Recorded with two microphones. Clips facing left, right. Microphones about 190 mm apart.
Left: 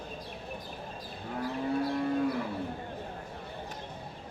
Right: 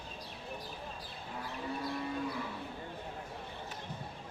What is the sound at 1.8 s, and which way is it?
Livestock, 55° left (ahead or behind).